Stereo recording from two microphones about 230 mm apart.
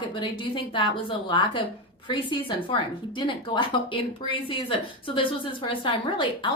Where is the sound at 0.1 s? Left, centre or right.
Left.